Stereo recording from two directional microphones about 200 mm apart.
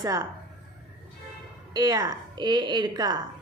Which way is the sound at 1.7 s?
20° right (ahead or behind).